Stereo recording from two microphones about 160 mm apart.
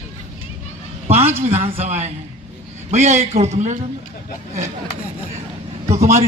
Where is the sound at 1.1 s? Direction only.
40° right (ahead or behind).